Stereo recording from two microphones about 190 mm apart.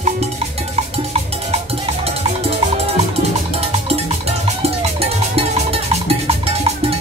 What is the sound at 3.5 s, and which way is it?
Music, 30° right (ahead or behind).